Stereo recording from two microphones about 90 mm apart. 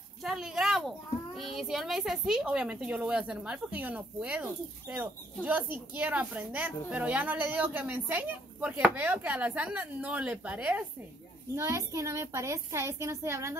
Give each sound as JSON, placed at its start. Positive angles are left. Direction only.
{"t": 0.2, "sound": "a child's voice", "side_deg": -5}
{"t": 11.5, "sound": "a child's voice", "side_deg": -35}